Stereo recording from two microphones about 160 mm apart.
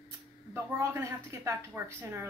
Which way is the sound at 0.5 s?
15° right (ahead or behind).